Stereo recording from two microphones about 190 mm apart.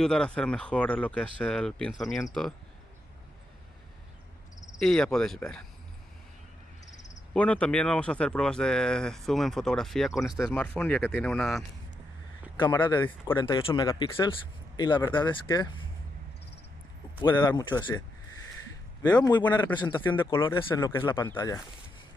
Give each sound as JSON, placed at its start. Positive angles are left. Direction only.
{"t": 0.0, "sound": "speech", "side_deg": 5}
{"t": 4.7, "sound": "speech", "side_deg": 5}
{"t": 7.3, "sound": "speech", "side_deg": 5}
{"t": 12.5, "sound": "speech", "side_deg": 25}
{"t": 17.2, "sound": "speech", "side_deg": 25}
{"t": 19.0, "sound": "speech", "side_deg": 20}
{"t": 21.2, "sound": "speech", "side_deg": 15}